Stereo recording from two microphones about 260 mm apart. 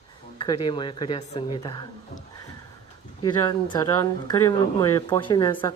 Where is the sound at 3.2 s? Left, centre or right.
Centre.